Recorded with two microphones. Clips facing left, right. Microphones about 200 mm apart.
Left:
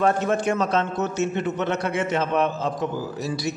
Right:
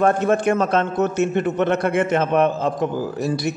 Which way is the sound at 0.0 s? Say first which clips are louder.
Right 4 dB; 50° right (ahead or behind).